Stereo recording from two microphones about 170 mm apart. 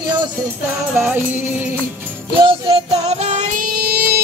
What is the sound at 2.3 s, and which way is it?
Music, 30° right (ahead or behind).